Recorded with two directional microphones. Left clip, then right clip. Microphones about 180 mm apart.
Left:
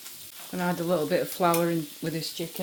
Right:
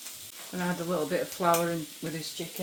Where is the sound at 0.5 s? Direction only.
50° left (ahead or behind).